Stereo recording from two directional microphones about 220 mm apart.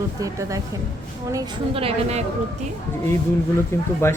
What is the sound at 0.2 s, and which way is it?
A woman's voice, 15° right (ahead or behind).